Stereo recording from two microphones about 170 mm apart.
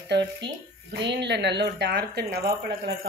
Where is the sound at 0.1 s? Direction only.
85° right.